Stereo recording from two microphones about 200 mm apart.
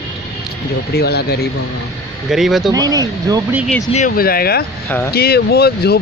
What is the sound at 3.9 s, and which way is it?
Speech, 45° left (ahead or behind).